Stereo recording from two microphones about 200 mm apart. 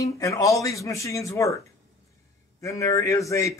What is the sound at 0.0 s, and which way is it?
A man's voice, 15° left (ahead or behind).